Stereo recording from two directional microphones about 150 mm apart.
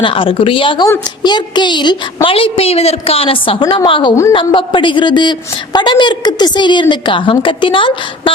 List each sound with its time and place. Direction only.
0.0 s a woman's voice: 35° left (ahead or behind)